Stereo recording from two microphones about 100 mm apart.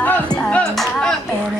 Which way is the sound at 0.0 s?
15° left (ahead or behind).